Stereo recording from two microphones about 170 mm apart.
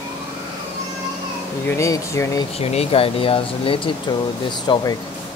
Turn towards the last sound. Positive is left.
turn(degrees=25)  # may be behind; listen again after turning